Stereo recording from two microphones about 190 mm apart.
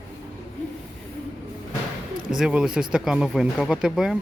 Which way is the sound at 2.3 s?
5° right (ahead or behind).